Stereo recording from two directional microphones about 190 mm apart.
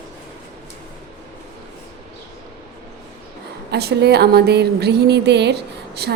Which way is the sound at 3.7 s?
60° right (ahead or behind).